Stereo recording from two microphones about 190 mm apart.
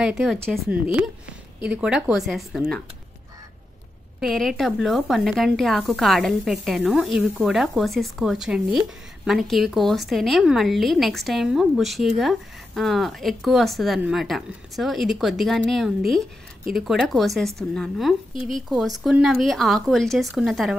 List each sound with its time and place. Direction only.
0.0 s speech: centre (ahead or behind)
4.2 s speech: centre (ahead or behind)